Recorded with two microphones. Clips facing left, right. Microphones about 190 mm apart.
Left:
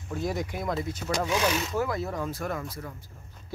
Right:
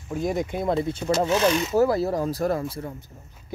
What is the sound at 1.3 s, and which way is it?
Speech, 10° left (ahead or behind).